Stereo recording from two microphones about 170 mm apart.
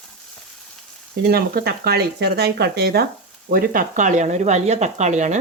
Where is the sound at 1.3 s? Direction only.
65° right (ahead or behind).